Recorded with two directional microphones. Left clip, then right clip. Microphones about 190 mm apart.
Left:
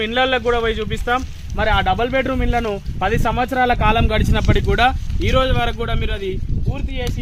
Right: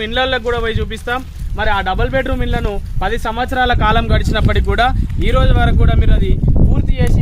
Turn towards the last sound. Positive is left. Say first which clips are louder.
# right 3 dB
turn(degrees=-5)  # may be behind; listen again after turning